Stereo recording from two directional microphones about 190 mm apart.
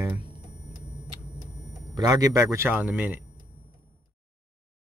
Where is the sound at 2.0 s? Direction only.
20° right (ahead or behind).